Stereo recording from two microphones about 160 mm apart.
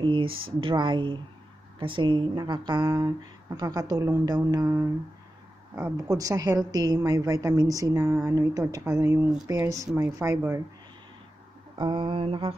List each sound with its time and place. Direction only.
0.0 s a woman's voice: 30° right (ahead or behind)
6.0 s a woman's voice: 20° right (ahead or behind)
11.7 s speech: 30° right (ahead or behind)